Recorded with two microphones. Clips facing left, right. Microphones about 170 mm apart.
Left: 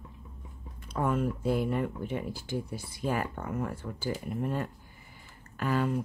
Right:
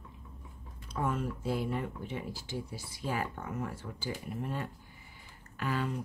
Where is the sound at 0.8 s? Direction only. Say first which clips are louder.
Left 5 dB; 55° left (ahead or behind).